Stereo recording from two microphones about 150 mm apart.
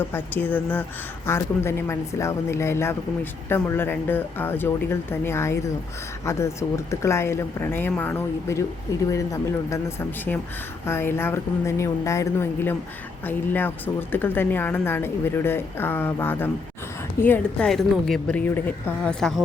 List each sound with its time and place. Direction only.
0.0 s a woman's voice: 15° left (ahead or behind)
17.7 s a woman's voice: centre (ahead or behind)